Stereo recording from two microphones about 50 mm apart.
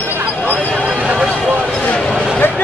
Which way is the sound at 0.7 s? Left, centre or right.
Right.